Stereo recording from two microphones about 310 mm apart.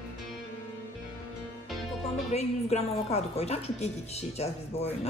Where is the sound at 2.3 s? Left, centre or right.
Left.